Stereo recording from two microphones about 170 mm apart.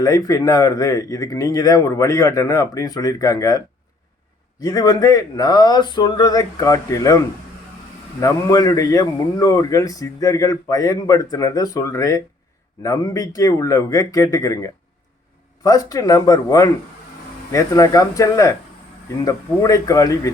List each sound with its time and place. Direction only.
0.0 s a man's voice: 20° left (ahead or behind)
4.6 s a man's voice: 25° left (ahead or behind)
8.2 s a man's voice: 20° left (ahead or behind)